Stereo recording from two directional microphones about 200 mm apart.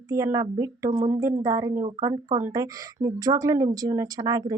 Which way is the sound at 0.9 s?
40° right (ahead or behind).